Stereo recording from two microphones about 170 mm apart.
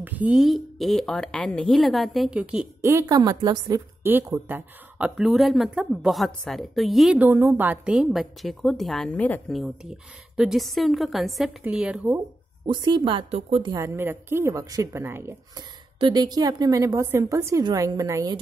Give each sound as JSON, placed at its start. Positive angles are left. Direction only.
{"t": 0.0, "sound": "a woman's voice", "side_deg": -10}
{"t": 2.8, "sound": "a woman's voice", "side_deg": -20}
{"t": 12.6, "sound": "a woman's voice", "side_deg": -30}
{"t": 16.0, "sound": "a woman's voice", "side_deg": -25}